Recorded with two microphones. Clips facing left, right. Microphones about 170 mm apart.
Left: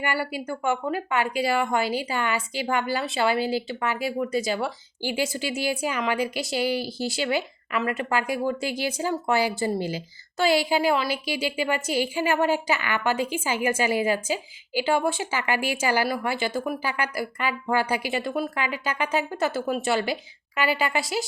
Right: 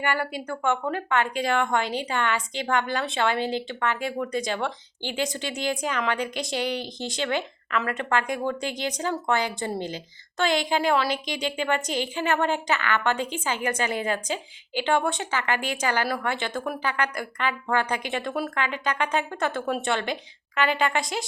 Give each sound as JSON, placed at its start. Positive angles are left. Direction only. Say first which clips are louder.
{"t": 0.0, "sound": "a woman's voice", "louder": "even", "side_deg": 5}